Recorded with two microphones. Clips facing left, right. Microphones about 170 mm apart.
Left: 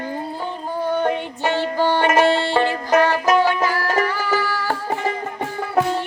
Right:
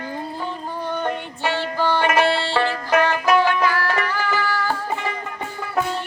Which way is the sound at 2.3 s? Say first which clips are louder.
Left 3 dB; 15° left (ahead or behind).